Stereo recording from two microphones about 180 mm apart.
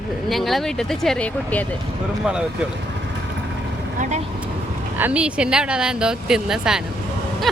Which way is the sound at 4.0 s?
40° right (ahead or behind).